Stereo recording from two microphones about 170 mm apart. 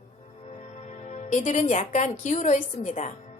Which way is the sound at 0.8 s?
45° left (ahead or behind).